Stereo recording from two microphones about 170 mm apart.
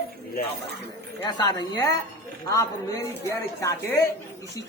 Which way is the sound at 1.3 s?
25° left (ahead or behind).